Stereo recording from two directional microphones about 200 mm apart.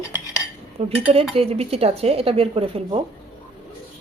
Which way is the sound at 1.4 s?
30° right (ahead or behind).